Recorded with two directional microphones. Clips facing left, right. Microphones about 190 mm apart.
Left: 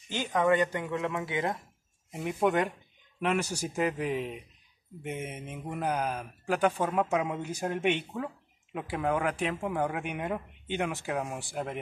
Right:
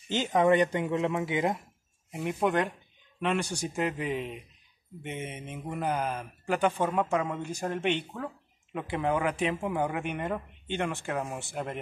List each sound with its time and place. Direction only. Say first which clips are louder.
0.1 s speech: right 3 dB; 20° right (ahead or behind)
2.1 s speech: even; centre (ahead or behind)